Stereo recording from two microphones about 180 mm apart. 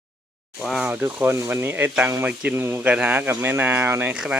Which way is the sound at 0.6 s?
Centre (ahead or behind).